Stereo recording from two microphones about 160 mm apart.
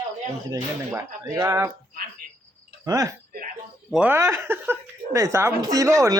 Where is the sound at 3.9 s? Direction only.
10° right (ahead or behind).